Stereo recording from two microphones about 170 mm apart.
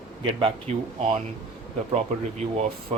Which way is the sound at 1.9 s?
40° right (ahead or behind).